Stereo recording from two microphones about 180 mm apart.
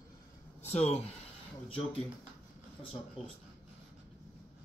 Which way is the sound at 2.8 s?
30° left (ahead or behind).